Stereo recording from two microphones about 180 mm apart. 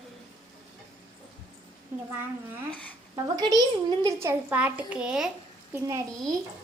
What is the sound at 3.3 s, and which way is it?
A child's voice, 20° right (ahead or behind).